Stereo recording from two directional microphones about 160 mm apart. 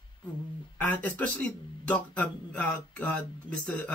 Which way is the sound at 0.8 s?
10° left (ahead or behind).